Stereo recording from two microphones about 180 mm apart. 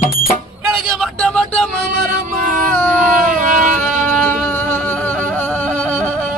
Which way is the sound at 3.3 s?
50° right (ahead or behind).